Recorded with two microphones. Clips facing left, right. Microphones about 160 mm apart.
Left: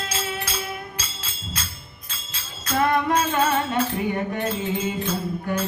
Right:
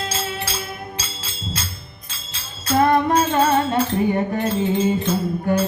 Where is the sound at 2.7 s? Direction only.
30° right (ahead or behind).